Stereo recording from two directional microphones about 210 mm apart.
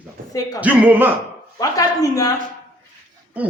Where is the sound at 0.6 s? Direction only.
10° right (ahead or behind).